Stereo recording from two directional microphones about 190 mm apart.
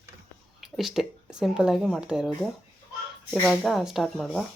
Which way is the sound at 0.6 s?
Centre (ahead or behind).